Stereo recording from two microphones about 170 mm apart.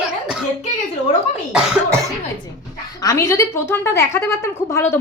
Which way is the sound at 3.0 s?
20° left (ahead or behind).